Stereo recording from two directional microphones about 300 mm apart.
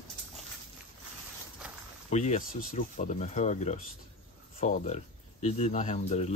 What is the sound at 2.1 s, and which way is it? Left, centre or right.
Speech, left.